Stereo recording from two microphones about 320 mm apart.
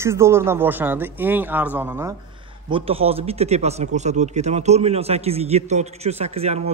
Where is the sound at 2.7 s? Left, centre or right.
Centre.